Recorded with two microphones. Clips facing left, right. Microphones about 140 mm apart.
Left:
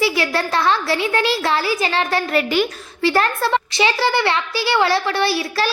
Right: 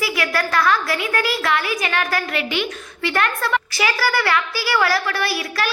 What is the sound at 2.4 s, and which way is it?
A woman's voice, 40° left (ahead or behind).